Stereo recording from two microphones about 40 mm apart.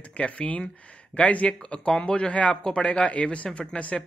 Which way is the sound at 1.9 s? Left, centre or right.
Left.